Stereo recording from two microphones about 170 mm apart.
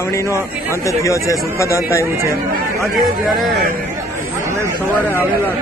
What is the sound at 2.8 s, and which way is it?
Speech, centre (ahead or behind).